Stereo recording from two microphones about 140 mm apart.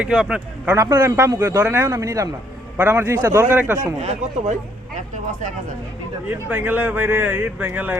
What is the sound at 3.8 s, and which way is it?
Speech, 55° right (ahead or behind).